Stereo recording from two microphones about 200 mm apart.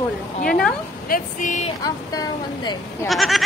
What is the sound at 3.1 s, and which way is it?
Speech, centre (ahead or behind).